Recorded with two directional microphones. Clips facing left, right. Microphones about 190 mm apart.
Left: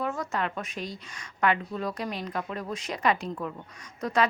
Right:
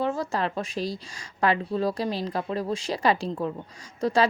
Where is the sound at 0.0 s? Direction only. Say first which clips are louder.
Right 4 dB; 30° right (ahead or behind).